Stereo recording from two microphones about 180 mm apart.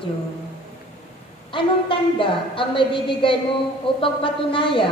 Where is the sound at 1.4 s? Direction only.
25° left (ahead or behind).